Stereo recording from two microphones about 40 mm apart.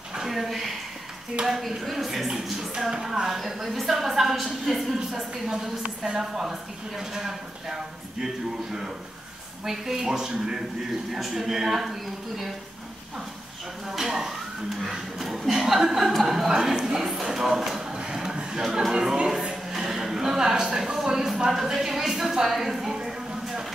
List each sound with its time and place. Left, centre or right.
0.1 s a sound: centre
0.4 s a sound: centre
1.4 s a woman's voice: centre
9.7 s a woman's voice: centre
11.1 s a woman's voice: centre
13.9 s a woman's voice: centre
18.1 s chatter: centre
19.8 s a sound: centre
20.7 s speech: centre